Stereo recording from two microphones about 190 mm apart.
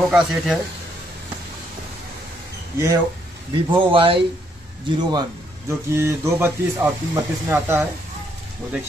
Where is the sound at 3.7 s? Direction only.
25° right (ahead or behind).